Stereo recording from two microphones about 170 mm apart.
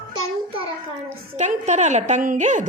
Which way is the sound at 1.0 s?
45° right (ahead or behind).